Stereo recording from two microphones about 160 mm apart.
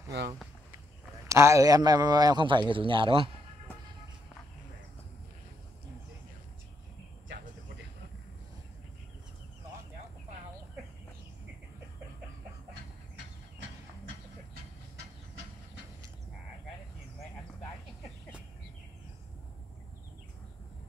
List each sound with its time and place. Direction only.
1.3 s a man's voice: 20° right (ahead or behind)